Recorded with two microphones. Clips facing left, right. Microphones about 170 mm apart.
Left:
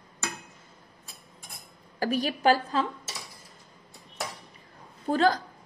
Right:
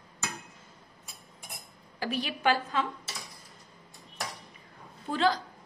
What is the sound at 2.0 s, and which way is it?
Speech, 45° left (ahead or behind).